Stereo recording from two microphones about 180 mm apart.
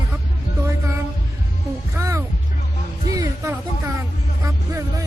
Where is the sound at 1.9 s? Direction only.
15° right (ahead or behind).